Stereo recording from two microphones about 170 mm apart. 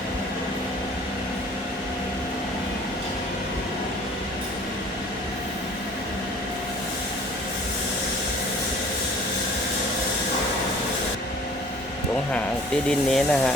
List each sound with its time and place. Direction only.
13.1 s speech: 5° left (ahead or behind)